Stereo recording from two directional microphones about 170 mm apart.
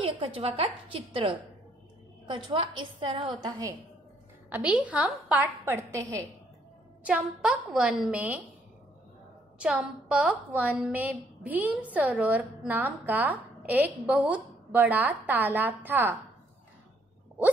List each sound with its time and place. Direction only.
0.0 s a woman's voice: 35° right (ahead or behind)
4.5 s a woman's voice: 5° right (ahead or behind)
7.0 s a woman's voice: 10° right (ahead or behind)
9.6 s a woman's voice: 5° right (ahead or behind)